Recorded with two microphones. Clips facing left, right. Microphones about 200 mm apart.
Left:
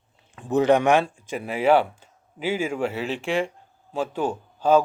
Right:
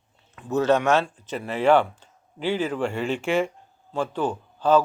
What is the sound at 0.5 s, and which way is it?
Speech, 15° left (ahead or behind).